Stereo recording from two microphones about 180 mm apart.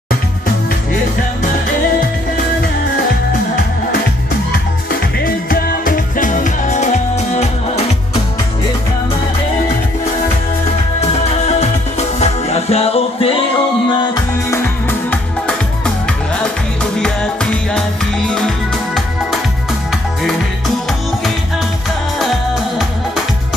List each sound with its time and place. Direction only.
5.2 s music: 55° left (ahead or behind); by 7.8 s 40° left (ahead or behind)
11.0 s music: 35° left (ahead or behind)
14.5 s music: 10° left (ahead or behind)
16.9 s music: 5° left (ahead or behind)